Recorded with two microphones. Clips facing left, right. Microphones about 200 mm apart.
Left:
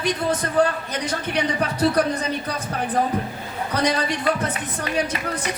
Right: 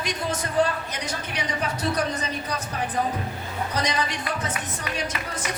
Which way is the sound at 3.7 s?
60° left (ahead or behind).